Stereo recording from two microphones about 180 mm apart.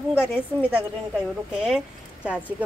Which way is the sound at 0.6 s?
10° right (ahead or behind).